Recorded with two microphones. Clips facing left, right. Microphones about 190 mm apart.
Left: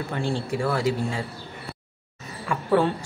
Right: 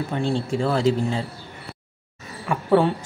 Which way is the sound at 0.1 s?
20° right (ahead or behind).